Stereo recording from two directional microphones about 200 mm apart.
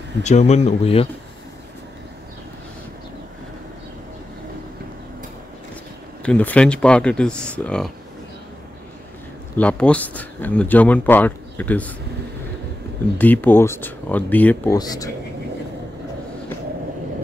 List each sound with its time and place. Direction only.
0.2 s speech: 35° left (ahead or behind)
6.2 s speech: 5° left (ahead or behind)
9.6 s speech: 5° left (ahead or behind)
13.2 s speech: 10° left (ahead or behind)
14.8 s speech: 20° left (ahead or behind)